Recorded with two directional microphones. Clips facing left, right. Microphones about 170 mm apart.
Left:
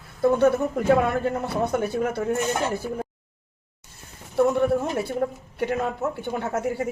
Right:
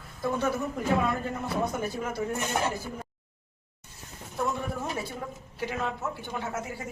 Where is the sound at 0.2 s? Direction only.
65° left (ahead or behind).